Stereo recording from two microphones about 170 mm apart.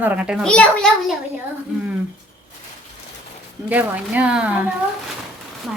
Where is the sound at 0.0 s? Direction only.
10° right (ahead or behind).